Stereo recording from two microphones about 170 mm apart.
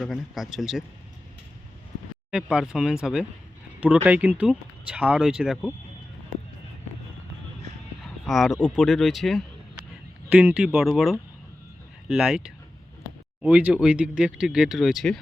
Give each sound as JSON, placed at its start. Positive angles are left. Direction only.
{"t": 0.0, "sound": "speech", "side_deg": 0}
{"t": 2.3, "sound": "speech", "side_deg": -5}
{"t": 8.0, "sound": "speech", "side_deg": 0}